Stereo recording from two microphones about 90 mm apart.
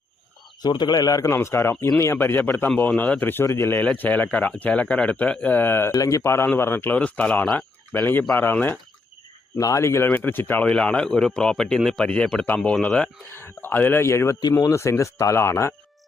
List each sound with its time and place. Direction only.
0.6 s speech: 50° left (ahead or behind); by 3.4 s 20° left (ahead or behind)
3.4 s speech: 30° left (ahead or behind)
3.8 s speech: 15° left (ahead or behind)
5.9 s speech: 40° left (ahead or behind); by 8.8 s 20° left (ahead or behind)
9.6 s speech: 35° left (ahead or behind); by 10.7 s 20° left (ahead or behind)
10.7 s speech: 10° left (ahead or behind)
13.3 s speech: 25° left (ahead or behind)